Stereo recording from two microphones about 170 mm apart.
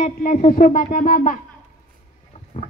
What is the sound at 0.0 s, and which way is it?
A woman's voice, 50° left (ahead or behind).